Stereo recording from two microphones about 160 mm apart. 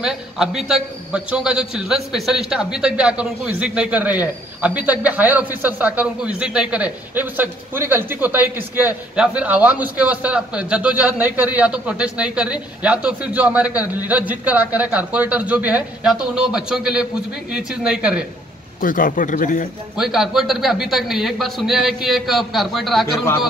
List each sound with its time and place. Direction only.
0.0 s a man's voice: 5° right (ahead or behind)
18.8 s speech: 60° left (ahead or behind)
20.0 s a man's voice: centre (ahead or behind)